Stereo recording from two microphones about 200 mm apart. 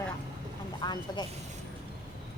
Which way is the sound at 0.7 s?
20° left (ahead or behind).